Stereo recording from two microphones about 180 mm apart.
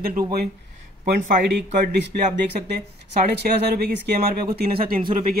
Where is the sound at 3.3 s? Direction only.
60° right (ahead or behind).